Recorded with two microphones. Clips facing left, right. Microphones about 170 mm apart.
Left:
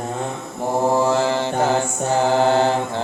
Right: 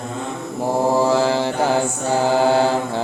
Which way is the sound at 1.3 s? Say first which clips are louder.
Right 1 dB; 10° right (ahead or behind).